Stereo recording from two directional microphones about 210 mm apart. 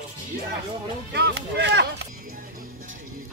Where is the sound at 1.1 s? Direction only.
55° right (ahead or behind).